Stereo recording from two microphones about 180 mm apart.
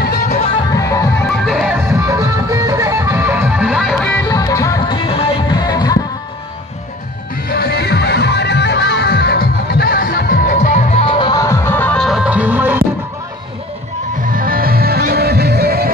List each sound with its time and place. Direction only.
0.0 s music: 60° left (ahead or behind)
0.7 s music: 20° left (ahead or behind)
1.4 s music: centre (ahead or behind)
1.9 s music: 15° right (ahead or behind); by 4.2 s 5° left (ahead or behind)
4.2 s music: 20° left (ahead or behind)
7.4 s music: 60° left (ahead or behind)
10.6 s music: 35° left (ahead or behind); by 12.8 s 10° right (ahead or behind)
14.2 s music: 50° right (ahead or behind)